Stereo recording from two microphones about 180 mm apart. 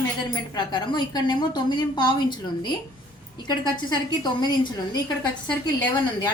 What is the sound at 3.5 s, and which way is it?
A woman's voice, 25° left (ahead or behind).